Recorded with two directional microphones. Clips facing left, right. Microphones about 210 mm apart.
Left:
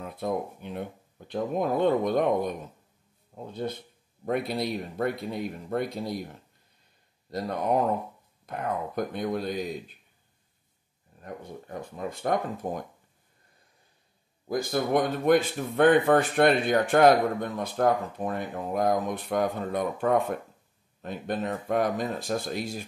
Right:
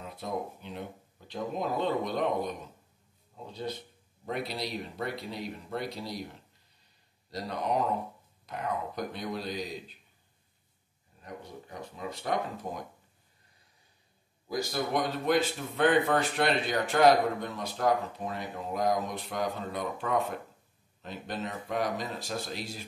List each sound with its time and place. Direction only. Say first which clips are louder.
0.0 s a man's voice: left 5 dB; 55° left (ahead or behind)
7.2 s a man's voice: left 5 dB; 50° left (ahead or behind)
11.2 s a man's voice: left 4 dB; 50° left (ahead or behind)
14.5 s a man's voice: left 5 dB; 55° left (ahead or behind)